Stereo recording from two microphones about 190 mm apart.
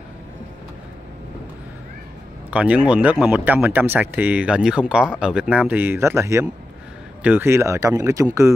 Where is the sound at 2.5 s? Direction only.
5° right (ahead or behind).